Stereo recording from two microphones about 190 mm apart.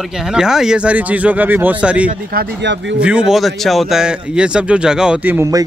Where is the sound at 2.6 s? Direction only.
70° right (ahead or behind).